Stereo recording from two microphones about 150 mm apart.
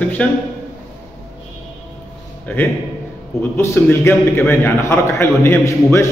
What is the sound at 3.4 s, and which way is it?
A man's voice, 15° left (ahead or behind).